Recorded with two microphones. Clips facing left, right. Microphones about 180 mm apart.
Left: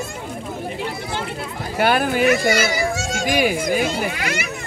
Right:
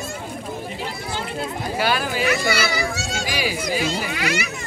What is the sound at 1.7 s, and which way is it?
A child's voice, 55° left (ahead or behind).